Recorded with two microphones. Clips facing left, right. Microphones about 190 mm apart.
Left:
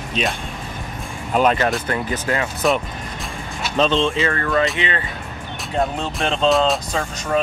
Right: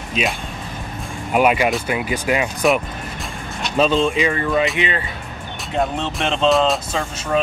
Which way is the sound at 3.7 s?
5° right (ahead or behind).